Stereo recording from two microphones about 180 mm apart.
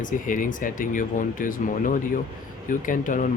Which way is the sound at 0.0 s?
45° left (ahead or behind).